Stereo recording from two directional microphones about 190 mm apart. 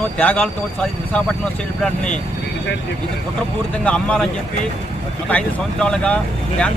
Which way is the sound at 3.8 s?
5° left (ahead or behind).